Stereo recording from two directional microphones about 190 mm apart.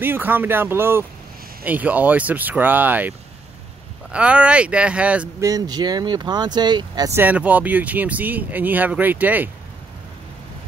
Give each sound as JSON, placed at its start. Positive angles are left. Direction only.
{"t": 0.0, "sound": "speech", "side_deg": -10}
{"t": 5.5, "sound": "speech", "side_deg": -20}
{"t": 7.2, "sound": "speech", "side_deg": -10}